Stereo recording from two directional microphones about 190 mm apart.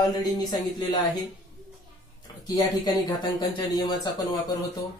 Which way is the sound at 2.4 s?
20° left (ahead or behind).